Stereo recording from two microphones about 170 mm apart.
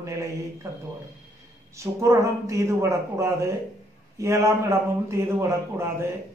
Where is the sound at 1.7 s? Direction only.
15° right (ahead or behind).